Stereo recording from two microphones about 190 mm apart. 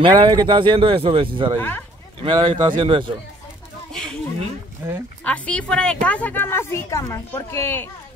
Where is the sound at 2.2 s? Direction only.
25° right (ahead or behind).